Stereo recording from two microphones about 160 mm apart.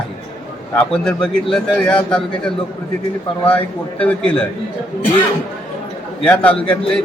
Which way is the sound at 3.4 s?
10° left (ahead or behind).